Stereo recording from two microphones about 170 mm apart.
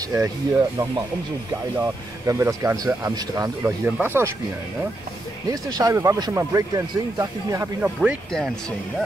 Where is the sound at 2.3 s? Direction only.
15° right (ahead or behind).